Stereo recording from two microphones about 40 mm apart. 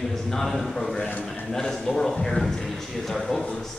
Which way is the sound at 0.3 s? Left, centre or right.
Centre.